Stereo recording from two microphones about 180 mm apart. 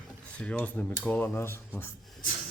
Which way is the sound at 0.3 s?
5° left (ahead or behind).